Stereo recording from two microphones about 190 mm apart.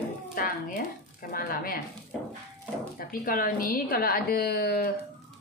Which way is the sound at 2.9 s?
50° left (ahead or behind).